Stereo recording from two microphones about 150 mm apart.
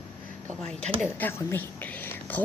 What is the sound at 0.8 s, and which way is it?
Speech, 50° right (ahead or behind).